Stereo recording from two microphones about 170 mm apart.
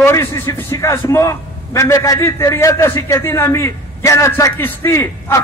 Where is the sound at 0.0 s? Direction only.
15° left (ahead or behind).